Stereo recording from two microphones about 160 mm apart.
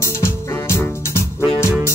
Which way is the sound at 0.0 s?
15° left (ahead or behind).